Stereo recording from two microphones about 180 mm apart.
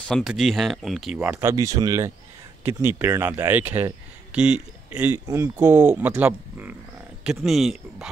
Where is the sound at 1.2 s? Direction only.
15° right (ahead or behind).